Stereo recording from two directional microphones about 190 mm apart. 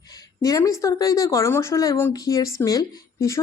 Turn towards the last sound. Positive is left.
turn(degrees=20)  # may be behind; listen again after turning